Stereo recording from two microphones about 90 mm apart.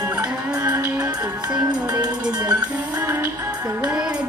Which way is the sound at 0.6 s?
35° right (ahead or behind).